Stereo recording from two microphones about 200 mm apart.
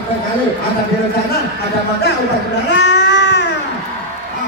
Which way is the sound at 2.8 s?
60° left (ahead or behind).